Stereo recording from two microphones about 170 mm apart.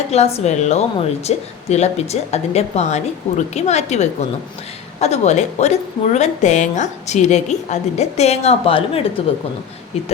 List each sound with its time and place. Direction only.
0.3 s a woman's voice: 40° left (ahead or behind)